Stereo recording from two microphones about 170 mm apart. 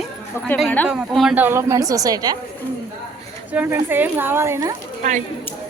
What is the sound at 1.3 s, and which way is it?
Speech, 10° right (ahead or behind).